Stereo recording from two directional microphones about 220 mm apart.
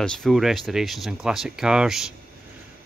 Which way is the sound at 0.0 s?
Centre (ahead or behind).